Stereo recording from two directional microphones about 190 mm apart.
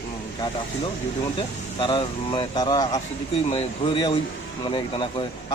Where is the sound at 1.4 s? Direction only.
25° left (ahead or behind).